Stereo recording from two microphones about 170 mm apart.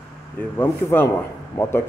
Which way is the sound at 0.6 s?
15° left (ahead or behind).